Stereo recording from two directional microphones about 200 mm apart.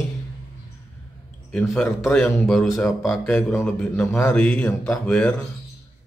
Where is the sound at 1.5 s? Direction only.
5° left (ahead or behind).